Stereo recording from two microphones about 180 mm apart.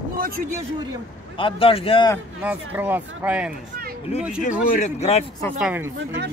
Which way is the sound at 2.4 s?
10° right (ahead or behind).